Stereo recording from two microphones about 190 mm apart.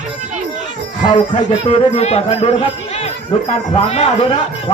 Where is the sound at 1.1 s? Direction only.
35° left (ahead or behind).